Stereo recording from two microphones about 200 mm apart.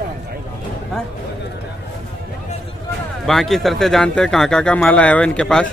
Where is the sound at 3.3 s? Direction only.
Centre (ahead or behind).